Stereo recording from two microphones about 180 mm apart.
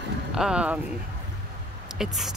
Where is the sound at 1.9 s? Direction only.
Centre (ahead or behind).